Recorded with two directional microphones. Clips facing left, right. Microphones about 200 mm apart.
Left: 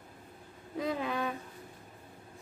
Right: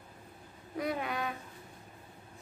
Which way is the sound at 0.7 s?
25° left (ahead or behind).